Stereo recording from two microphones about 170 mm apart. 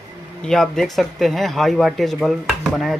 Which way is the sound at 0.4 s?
5° left (ahead or behind).